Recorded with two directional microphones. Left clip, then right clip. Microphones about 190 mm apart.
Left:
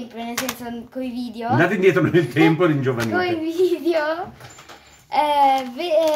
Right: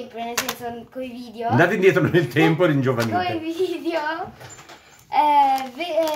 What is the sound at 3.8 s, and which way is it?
A child's voice, 30° left (ahead or behind).